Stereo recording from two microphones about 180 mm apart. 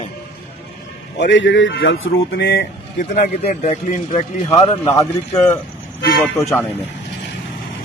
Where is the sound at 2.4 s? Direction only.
60° left (ahead or behind).